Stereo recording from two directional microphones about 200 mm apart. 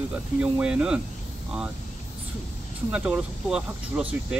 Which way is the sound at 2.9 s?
5° right (ahead or behind).